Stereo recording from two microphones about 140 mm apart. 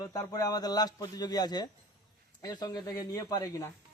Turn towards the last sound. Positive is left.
turn(degrees=20)  # may be behind; listen again after turning